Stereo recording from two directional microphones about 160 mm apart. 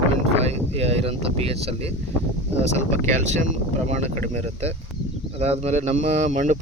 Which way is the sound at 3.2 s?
50° right (ahead or behind).